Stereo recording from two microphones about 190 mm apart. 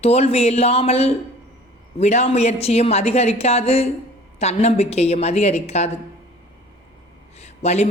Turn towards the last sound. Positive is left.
turn(degrees=35)  # may be behind; listen again after turning